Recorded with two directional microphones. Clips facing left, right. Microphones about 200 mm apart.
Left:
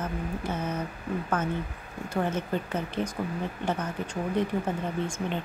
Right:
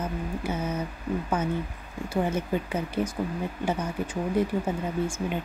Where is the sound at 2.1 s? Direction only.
10° right (ahead or behind).